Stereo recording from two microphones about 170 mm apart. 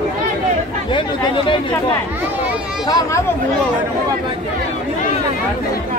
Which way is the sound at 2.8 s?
20° left (ahead or behind).